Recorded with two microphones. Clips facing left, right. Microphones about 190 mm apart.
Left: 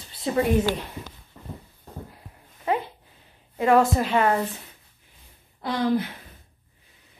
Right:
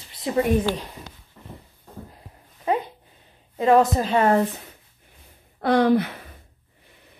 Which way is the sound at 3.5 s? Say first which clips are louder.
Right 2 dB; 20° right (ahead or behind).